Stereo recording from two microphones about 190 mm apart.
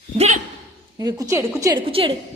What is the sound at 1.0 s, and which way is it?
Speech, 20° right (ahead or behind).